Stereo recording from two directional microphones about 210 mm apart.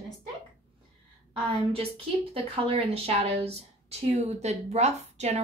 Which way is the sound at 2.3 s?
25° right (ahead or behind).